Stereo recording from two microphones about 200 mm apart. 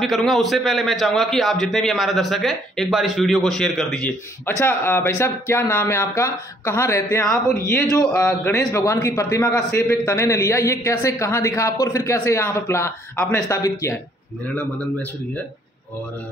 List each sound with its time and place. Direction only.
0.0 s a man's voice: centre (ahead or behind)
8.0 s a man's voice: 5° left (ahead or behind)
13.5 s a man's voice: 15° left (ahead or behind)